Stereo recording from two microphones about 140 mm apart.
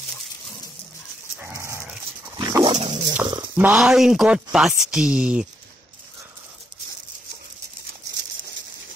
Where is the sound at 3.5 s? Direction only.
10° right (ahead or behind).